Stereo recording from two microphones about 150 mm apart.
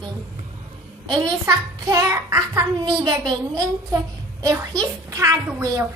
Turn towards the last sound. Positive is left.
turn(degrees=-25)  # may be behind; listen again after turning